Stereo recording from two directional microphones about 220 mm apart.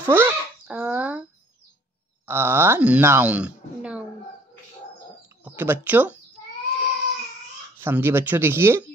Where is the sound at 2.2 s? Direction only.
10° right (ahead or behind).